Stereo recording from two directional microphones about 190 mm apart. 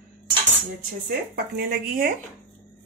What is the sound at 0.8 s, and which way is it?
Speech, 50° right (ahead or behind).